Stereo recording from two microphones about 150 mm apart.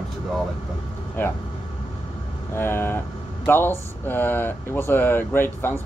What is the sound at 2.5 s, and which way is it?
Speech, 15° left (ahead or behind).